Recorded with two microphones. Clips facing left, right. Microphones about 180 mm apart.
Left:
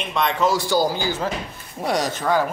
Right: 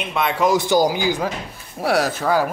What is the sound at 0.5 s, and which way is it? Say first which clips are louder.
Speech: right 3 dB; 20° right (ahead or behind).